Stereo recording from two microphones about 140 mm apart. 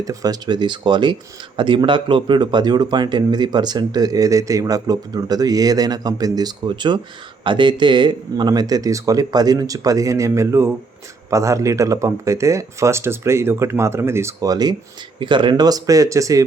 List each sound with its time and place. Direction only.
0.0 s speech: 25° right (ahead or behind)